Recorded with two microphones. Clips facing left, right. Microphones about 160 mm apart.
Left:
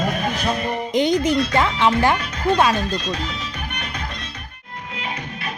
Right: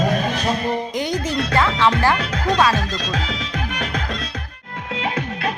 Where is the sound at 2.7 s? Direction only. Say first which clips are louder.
Even; 90° right.